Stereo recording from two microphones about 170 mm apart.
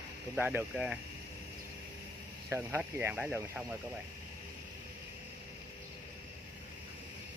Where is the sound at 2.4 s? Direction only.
15° right (ahead or behind).